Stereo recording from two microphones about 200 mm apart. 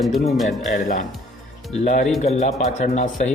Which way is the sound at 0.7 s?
40° left (ahead or behind).